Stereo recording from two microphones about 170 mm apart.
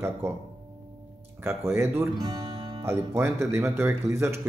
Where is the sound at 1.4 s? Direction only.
15° right (ahead or behind).